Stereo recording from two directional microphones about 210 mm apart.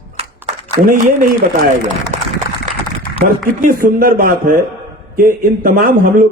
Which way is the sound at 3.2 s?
40° right (ahead or behind).